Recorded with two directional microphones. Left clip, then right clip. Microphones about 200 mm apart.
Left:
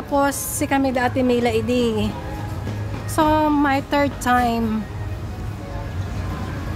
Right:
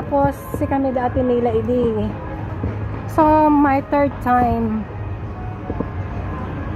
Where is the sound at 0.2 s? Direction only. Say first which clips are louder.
Right 1 dB; 15° left (ahead or behind).